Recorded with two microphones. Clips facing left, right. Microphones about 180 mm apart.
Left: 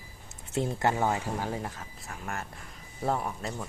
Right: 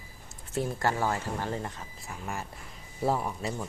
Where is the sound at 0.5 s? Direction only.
20° left (ahead or behind); by 1.8 s 5° left (ahead or behind).